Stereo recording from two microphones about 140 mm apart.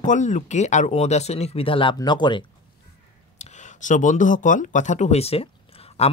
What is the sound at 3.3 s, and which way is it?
Speech, 55° left (ahead or behind).